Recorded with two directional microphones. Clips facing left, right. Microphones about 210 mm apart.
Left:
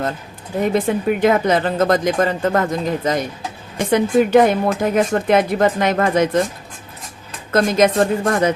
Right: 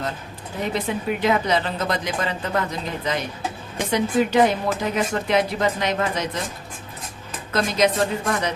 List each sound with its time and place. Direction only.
0.9 s speech: 50° left (ahead or behind)
7.5 s speech: 50° left (ahead or behind)